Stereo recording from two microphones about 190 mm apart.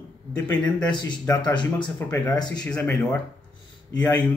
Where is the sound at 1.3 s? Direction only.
25° left (ahead or behind).